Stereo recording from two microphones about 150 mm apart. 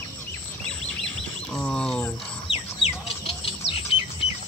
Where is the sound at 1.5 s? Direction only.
5° left (ahead or behind).